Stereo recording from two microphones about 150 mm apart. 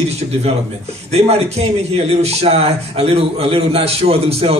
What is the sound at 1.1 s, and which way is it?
A man's voice, 45° right (ahead or behind).